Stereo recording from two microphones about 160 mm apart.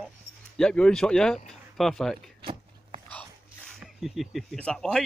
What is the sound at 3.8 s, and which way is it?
Speech, centre (ahead or behind).